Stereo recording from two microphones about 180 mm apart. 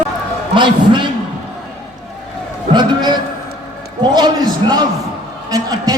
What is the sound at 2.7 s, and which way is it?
A man's voice, 25° right (ahead or behind).